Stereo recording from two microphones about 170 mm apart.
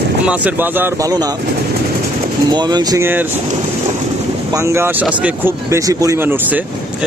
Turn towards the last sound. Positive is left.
turn(degrees=-10)  # may be behind; listen again after turning